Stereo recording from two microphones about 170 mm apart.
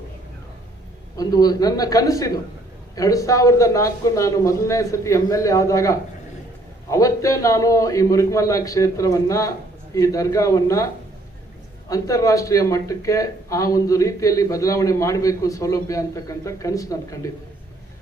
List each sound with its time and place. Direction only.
1.1 s speech: 20° left (ahead or behind)
11.9 s speech: 20° left (ahead or behind)